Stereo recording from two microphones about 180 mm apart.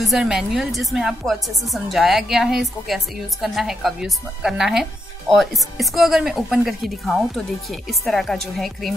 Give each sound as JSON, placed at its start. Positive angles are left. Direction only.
{"t": 0.0, "sound": "a woman's voice", "side_deg": 0}